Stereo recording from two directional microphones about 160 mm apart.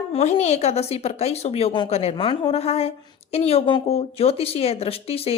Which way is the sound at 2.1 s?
30° left (ahead or behind).